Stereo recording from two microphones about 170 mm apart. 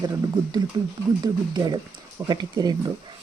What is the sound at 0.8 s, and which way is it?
Speech, 25° right (ahead or behind).